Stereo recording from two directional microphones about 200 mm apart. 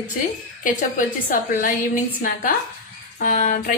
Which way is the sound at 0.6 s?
40° left (ahead or behind).